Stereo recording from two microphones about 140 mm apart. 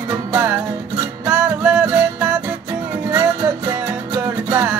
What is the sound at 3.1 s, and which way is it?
Music, 15° right (ahead or behind).